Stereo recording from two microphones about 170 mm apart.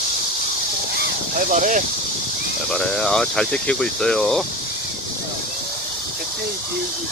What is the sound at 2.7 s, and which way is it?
Speech, 5° left (ahead or behind).